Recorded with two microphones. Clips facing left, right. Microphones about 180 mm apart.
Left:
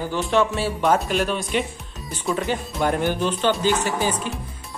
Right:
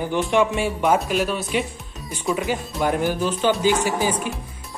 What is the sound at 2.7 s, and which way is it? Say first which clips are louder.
Speech: even; centre (ahead or behind).